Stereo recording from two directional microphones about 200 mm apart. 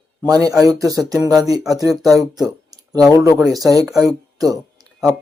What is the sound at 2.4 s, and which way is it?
Speech, 20° right (ahead or behind).